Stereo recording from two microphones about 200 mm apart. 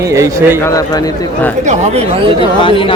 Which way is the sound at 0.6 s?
15° left (ahead or behind).